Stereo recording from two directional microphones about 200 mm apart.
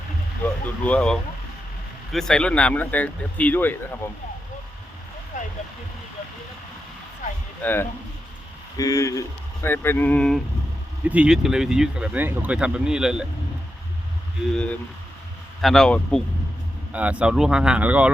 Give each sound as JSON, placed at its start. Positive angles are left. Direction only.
{"t": 0.4, "sound": "speech", "side_deg": 5}
{"t": 7.6, "sound": "speech", "side_deg": 10}
{"t": 11.0, "sound": "speech", "side_deg": -5}
{"t": 14.5, "sound": "speech", "side_deg": 5}